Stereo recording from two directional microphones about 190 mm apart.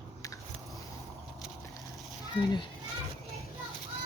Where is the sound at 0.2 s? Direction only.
20° left (ahead or behind).